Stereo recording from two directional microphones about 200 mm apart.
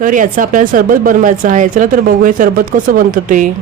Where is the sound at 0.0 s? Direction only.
40° right (ahead or behind).